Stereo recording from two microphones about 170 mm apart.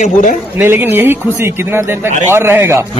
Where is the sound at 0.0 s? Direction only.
45° left (ahead or behind).